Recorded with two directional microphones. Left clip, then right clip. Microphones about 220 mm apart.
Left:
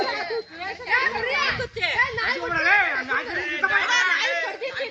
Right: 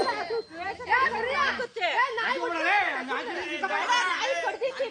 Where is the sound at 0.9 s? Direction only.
20° right (ahead or behind).